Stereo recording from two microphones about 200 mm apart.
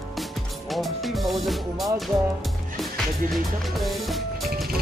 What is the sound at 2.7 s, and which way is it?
Music, centre (ahead or behind).